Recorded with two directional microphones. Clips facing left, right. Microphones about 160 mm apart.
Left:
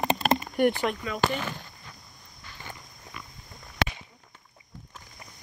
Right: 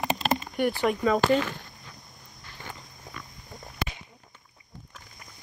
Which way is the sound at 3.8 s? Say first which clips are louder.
Left 5 dB; 80° left.